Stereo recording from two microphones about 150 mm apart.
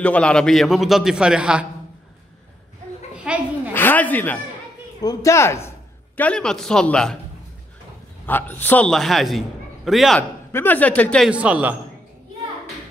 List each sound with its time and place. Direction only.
0.0 s a man's voice: 10° left (ahead or behind)
3.3 s a sound: 5° right (ahead or behind)
3.7 s a sound: 10° left (ahead or behind)
5.0 s speech: 20° left (ahead or behind)
8.3 s a man's voice: 15° left (ahead or behind)
10.5 s speech: 15° left (ahead or behind)
11.2 s a man's voice: 10° right (ahead or behind)